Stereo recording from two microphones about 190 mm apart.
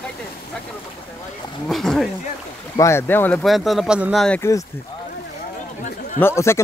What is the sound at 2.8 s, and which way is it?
Speech, 15° left (ahead or behind).